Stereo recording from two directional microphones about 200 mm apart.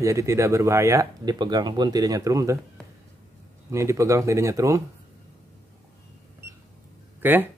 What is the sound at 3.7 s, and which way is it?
Speech, 15° right (ahead or behind).